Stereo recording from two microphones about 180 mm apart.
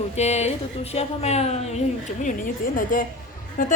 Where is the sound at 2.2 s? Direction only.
50° left (ahead or behind).